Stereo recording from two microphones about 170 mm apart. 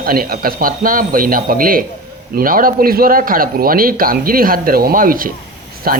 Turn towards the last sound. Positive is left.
turn(degrees=-60)  # may be behind; listen again after turning